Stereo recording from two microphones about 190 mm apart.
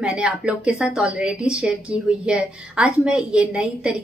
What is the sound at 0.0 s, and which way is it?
A woman's voice, 5° right (ahead or behind).